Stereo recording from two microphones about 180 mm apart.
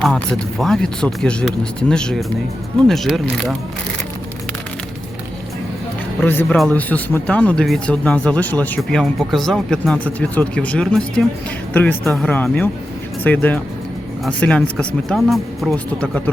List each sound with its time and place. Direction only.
0.0 s speech: 5° left (ahead or behind)
6.2 s speech: 10° left (ahead or behind)